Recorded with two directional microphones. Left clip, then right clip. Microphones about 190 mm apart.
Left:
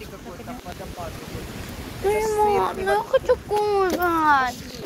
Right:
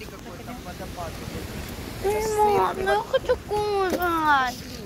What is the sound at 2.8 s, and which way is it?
A child's voice, 15° left (ahead or behind).